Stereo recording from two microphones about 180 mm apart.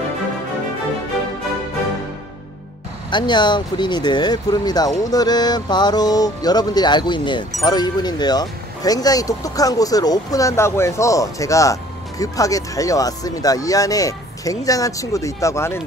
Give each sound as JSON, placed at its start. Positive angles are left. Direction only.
{"t": 3.1, "sound": "speech", "side_deg": 25}